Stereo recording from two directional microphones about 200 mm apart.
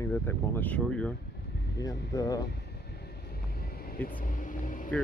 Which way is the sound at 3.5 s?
50° left (ahead or behind).